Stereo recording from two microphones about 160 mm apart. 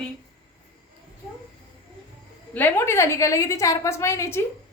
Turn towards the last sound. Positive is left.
turn(degrees=15)  # may be behind; listen again after turning